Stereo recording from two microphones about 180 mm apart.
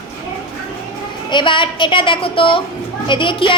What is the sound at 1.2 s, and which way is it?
A woman's voice, 25° left (ahead or behind).